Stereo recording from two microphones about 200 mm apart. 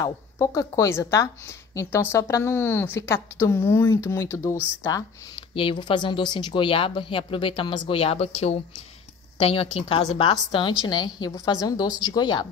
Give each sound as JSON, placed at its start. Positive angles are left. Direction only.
{"t": 0.0, "sound": "a woman's voice", "side_deg": 15}
{"t": 4.9, "sound": "speech", "side_deg": 25}